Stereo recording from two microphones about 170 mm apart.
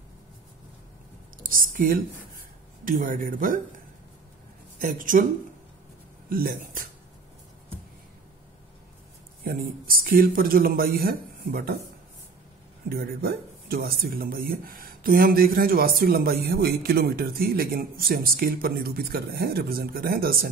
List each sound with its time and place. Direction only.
1.4 s speech: 55° right (ahead or behind)
6.2 s speech: 55° right (ahead or behind)
9.4 s speech: 60° right (ahead or behind)
12.9 s speech: 65° right (ahead or behind)